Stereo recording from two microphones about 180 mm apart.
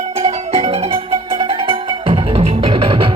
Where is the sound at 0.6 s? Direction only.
35° right (ahead or behind).